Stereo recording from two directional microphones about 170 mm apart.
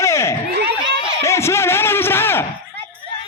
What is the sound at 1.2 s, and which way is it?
Music, 15° left (ahead or behind).